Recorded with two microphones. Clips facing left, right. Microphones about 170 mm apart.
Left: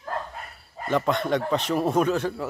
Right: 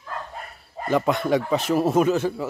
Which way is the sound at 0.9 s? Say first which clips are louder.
Right 3 dB; 5° right (ahead or behind).